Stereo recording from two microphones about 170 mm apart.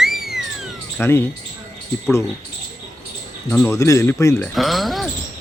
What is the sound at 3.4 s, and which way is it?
Speech, 10° left (ahead or behind).